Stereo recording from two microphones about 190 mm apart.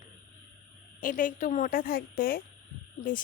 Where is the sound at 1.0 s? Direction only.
45° left (ahead or behind).